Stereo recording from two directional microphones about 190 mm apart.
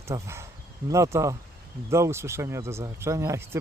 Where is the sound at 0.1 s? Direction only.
15° right (ahead or behind).